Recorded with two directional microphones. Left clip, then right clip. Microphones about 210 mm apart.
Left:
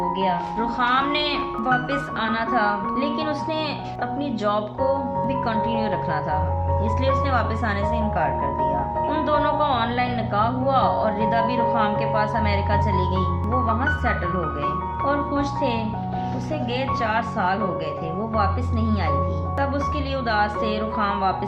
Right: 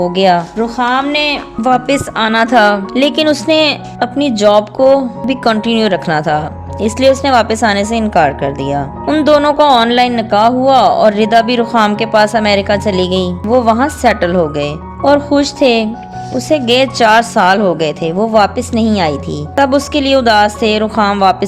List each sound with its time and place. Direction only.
0.6 s speech: 35° right (ahead or behind)